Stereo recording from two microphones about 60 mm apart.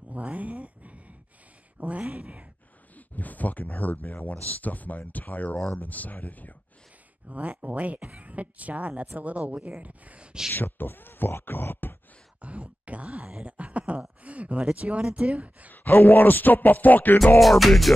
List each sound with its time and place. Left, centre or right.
0.1 s a sound: right
1.8 s speech: right
3.0 s speech: left
7.2 s speech: right
10.5 s speech: left
12.4 s groan: right
14.2 s speech: right
15.7 s speech: left
17.4 s music: centre